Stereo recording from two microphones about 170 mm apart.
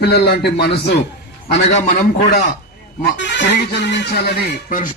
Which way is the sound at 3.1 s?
90° left.